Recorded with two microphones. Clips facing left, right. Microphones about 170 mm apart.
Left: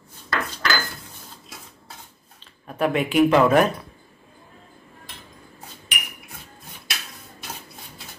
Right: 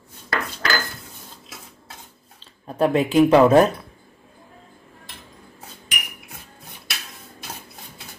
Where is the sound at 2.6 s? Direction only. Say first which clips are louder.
Right 3 dB; 30° right (ahead or behind).